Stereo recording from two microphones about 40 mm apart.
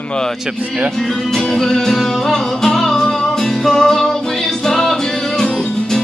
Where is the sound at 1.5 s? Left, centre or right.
Centre.